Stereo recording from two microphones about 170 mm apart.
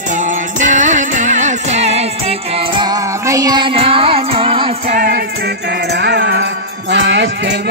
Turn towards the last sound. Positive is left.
turn(degrees=-90)